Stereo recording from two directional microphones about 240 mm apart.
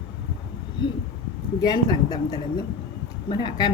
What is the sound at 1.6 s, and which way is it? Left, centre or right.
Speech, centre.